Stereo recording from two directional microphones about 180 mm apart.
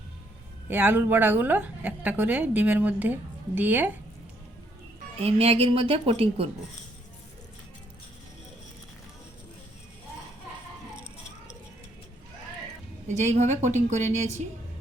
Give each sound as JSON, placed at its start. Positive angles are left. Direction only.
{"t": 0.7, "sound": "a woman's voice", "side_deg": -10}
{"t": 5.2, "sound": "a woman's voice", "side_deg": -35}
{"t": 13.1, "sound": "a woman's voice", "side_deg": -40}